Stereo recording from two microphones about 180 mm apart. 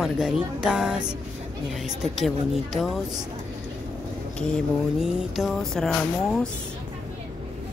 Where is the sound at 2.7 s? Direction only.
Centre (ahead or behind).